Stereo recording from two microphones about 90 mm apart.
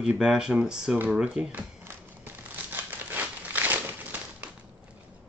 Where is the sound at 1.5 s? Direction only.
25° right (ahead or behind).